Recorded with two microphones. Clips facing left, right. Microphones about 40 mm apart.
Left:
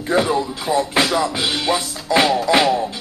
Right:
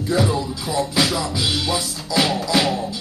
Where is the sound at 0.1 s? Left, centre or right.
Left.